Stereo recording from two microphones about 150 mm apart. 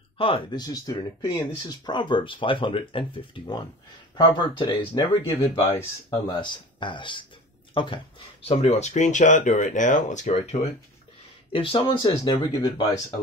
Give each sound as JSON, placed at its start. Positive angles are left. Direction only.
{"t": 0.2, "sound": "speech", "side_deg": 30}